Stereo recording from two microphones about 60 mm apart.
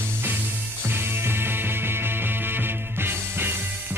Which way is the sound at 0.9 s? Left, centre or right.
Right.